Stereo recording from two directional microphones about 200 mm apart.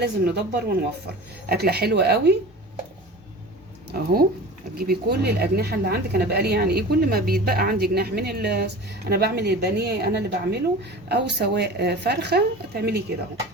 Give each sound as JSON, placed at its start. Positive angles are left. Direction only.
{"t": 0.0, "sound": "a woman's voice", "side_deg": -55}
{"t": 3.9, "sound": "a woman's voice", "side_deg": -50}